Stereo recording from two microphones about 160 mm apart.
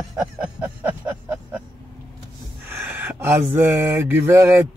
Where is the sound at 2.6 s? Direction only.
10° right (ahead or behind).